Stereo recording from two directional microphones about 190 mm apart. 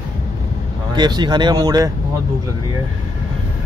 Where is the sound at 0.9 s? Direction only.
25° right (ahead or behind).